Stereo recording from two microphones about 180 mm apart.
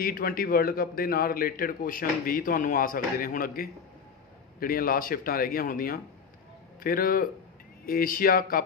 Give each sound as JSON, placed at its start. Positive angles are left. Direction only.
{"t": 0.0, "sound": "a man's voice", "side_deg": 55}